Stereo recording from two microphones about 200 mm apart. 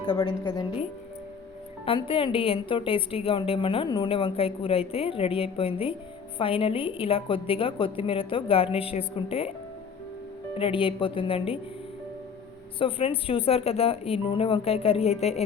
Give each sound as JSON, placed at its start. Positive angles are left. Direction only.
{"t": 0.0, "sound": "a woman's voice", "side_deg": 20}
{"t": 10.5, "sound": "a woman's voice", "side_deg": 25}
{"t": 12.8, "sound": "a woman's voice", "side_deg": 30}